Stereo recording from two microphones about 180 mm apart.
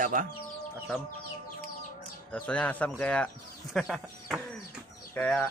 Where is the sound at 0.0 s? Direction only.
45° right (ahead or behind).